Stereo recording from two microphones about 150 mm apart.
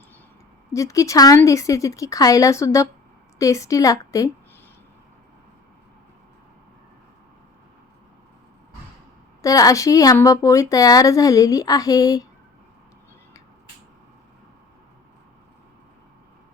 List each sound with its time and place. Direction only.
0.7 s speech: 20° left (ahead or behind)
9.4 s speech: 25° left (ahead or behind)